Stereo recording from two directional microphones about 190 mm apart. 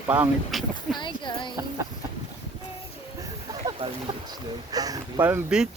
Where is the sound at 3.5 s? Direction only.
25° right (ahead or behind).